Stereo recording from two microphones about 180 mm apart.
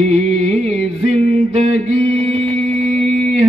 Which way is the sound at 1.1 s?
35° right (ahead or behind).